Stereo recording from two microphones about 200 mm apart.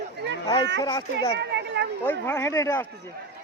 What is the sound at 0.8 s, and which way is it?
Speech, 20° left (ahead or behind).